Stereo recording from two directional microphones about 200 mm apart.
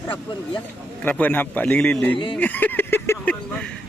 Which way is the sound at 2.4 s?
10° left (ahead or behind).